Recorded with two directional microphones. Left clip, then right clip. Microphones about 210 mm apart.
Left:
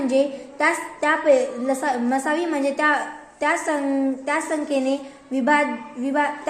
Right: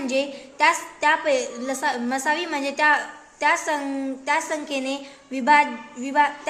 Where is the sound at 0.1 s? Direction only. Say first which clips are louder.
Left 3 dB; 20° right (ahead or behind).